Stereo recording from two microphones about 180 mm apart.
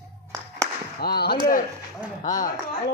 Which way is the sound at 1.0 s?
60° left (ahead or behind).